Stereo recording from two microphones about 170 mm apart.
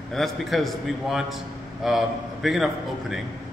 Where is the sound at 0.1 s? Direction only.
Centre (ahead or behind).